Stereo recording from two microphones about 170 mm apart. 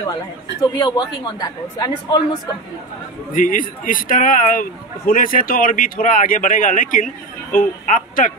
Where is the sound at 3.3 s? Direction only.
50° left (ahead or behind).